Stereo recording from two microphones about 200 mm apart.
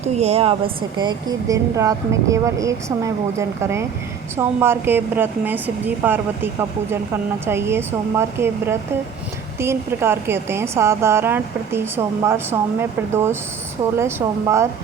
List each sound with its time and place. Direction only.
0.2 s a woman's voice: 30° right (ahead or behind); by 14.7 s 15° right (ahead or behind)